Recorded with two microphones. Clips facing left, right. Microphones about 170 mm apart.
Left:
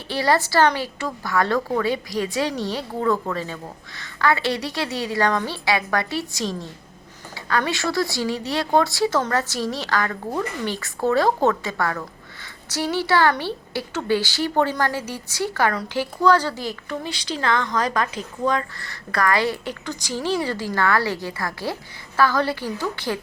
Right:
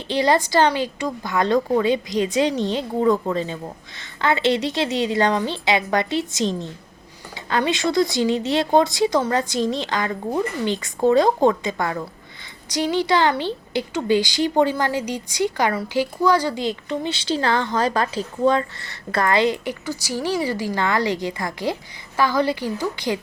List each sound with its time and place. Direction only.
0.1 s a woman's voice: 20° right (ahead or behind)
19.8 s speech: 10° right (ahead or behind)